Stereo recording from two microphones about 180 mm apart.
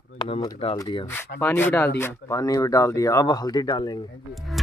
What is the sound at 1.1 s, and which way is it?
Speech, 10° left (ahead or behind).